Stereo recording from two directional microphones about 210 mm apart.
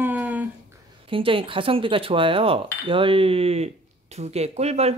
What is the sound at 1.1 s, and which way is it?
Speech, 25° right (ahead or behind).